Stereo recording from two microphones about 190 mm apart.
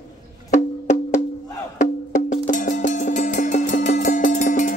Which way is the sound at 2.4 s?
45° left (ahead or behind).